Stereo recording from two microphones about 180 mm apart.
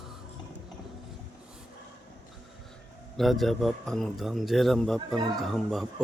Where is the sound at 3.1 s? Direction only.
Centre (ahead or behind).